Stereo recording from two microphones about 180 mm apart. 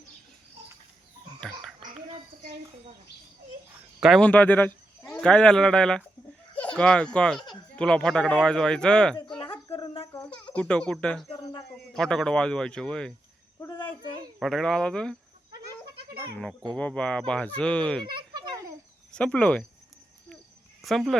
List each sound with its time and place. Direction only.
4.0 s speech: 5° left (ahead or behind)
9.7 s a sound: 30° left (ahead or behind)
10.5 s speech: 5° left (ahead or behind)
13.6 s a sound: 25° left (ahead or behind)
14.3 s speech: centre (ahead or behind)
16.7 s speech: 5° left (ahead or behind)
18.0 s a sound: 25° right (ahead or behind)
19.1 s speech: 5° left (ahead or behind)
20.8 s speech: centre (ahead or behind)